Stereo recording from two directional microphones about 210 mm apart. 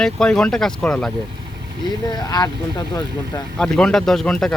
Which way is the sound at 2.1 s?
20° left (ahead or behind).